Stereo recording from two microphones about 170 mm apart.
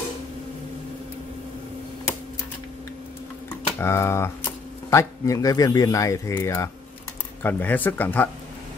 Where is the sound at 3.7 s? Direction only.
15° left (ahead or behind).